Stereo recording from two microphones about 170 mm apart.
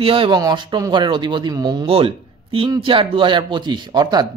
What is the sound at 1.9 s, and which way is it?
Speech, 35° right (ahead or behind).